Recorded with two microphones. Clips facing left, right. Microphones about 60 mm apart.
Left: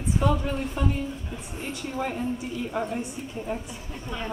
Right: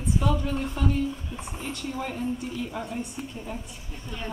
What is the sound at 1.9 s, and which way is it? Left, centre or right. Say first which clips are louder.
Speech: left 3 dB; centre.